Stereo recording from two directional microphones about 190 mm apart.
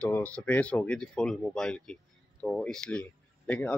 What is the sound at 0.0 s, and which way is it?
Speech, 10° left (ahead or behind).